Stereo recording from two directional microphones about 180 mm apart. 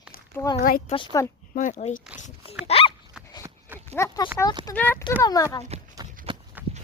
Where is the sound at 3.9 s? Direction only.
15° left (ahead or behind).